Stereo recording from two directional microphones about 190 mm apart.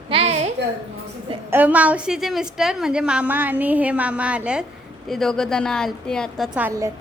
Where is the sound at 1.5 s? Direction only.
10° right (ahead or behind).